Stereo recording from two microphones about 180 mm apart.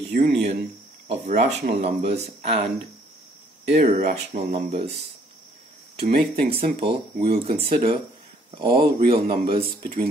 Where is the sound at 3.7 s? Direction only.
40° right (ahead or behind).